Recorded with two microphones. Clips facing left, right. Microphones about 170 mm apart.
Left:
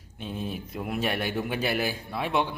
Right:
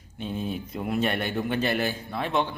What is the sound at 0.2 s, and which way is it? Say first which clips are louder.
Speech: right 3 dB; centre (ahead or behind).